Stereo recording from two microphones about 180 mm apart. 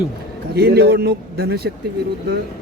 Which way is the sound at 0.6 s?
60° right (ahead or behind).